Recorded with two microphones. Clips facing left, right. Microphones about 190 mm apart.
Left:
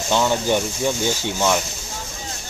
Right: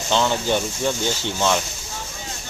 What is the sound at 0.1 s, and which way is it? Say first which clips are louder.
Speech: left 1 dB; 10° left (ahead or behind).